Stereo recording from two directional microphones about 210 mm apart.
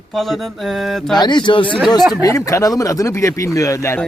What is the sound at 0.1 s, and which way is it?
Speech, centre (ahead or behind).